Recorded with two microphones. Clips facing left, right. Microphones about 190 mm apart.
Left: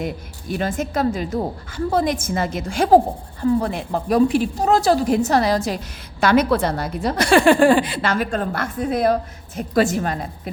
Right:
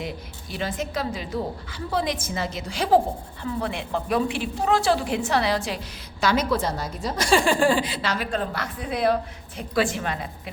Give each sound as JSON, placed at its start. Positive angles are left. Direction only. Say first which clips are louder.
{"t": 0.0, "sound": "a woman's voice", "louder": "left 6 dB", "side_deg": 50}